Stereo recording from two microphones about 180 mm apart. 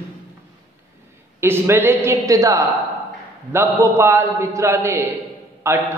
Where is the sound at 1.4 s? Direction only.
15° right (ahead or behind).